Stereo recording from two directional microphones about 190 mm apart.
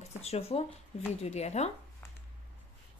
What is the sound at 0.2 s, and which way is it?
A woman's voice, 35° left (ahead or behind).